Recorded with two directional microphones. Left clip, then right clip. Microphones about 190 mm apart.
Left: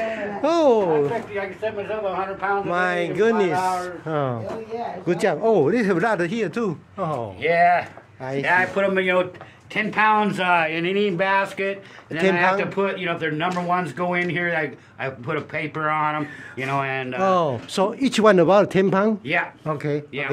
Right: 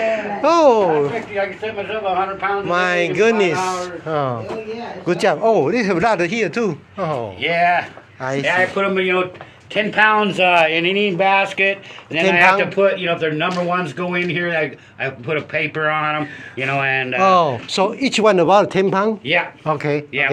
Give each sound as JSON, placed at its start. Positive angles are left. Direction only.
{"t": 0.1, "sound": "a sound", "side_deg": 30}
{"t": 2.7, "sound": "speech", "side_deg": 15}
{"t": 7.4, "sound": "speech", "side_deg": 50}
{"t": 8.2, "sound": "speech", "side_deg": 10}
{"t": 8.5, "sound": "speech", "side_deg": 50}
{"t": 9.8, "sound": "speech", "side_deg": 35}
{"t": 11.3, "sound": "speech", "side_deg": 90}
{"t": 12.4, "sound": "speech", "side_deg": 25}
{"t": 19.2, "sound": "speech", "side_deg": 10}
{"t": 19.7, "sound": "speech", "side_deg": 30}